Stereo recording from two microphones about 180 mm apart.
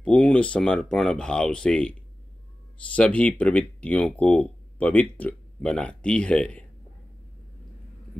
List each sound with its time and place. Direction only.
0.0 s speech: 5° left (ahead or behind)
3.0 s speech: 5° left (ahead or behind)